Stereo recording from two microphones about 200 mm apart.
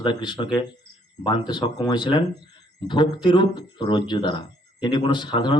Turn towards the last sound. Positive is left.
turn(degrees=20)  # may be behind; listen again after turning